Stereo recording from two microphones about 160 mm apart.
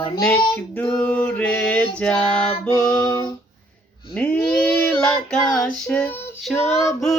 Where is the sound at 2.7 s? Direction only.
25° left (ahead or behind).